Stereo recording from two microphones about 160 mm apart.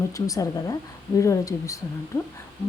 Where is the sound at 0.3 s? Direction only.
20° left (ahead or behind).